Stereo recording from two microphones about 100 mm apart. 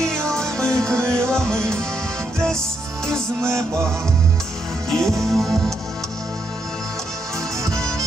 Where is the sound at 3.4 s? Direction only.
30° right (ahead or behind).